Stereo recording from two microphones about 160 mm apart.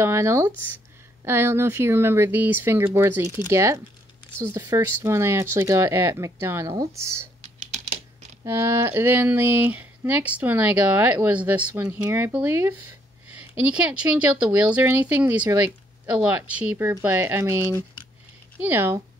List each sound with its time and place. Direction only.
0.0 s speech: 15° right (ahead or behind)
8.5 s speech: 15° right (ahead or behind)